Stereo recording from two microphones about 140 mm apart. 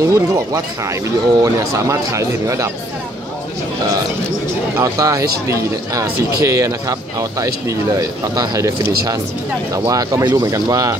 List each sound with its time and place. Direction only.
0.0 s speech: 20° right (ahead or behind)
4.7 s speech: 20° right (ahead or behind)
9.8 s speech: 25° right (ahead or behind)